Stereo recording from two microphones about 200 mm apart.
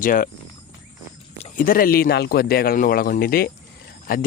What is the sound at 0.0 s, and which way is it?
Speech, 45° left (ahead or behind).